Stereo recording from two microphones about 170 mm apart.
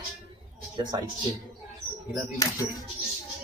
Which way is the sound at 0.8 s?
25° right (ahead or behind).